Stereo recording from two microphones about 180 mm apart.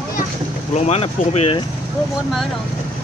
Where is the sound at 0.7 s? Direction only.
35° left (ahead or behind).